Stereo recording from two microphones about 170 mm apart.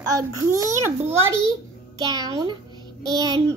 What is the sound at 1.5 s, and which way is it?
A child's voice, 20° right (ahead or behind).